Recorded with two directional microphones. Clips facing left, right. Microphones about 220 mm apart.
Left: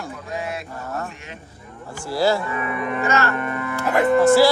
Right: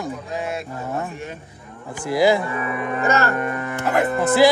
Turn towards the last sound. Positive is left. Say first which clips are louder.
# left 2 dB
turn(degrees=-20)  # may be behind; listen again after turning